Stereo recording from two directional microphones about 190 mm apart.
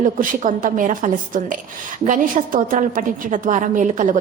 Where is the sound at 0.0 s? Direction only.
45° right (ahead or behind).